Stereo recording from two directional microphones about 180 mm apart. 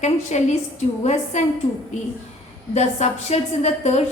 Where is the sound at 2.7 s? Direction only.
35° left (ahead or behind).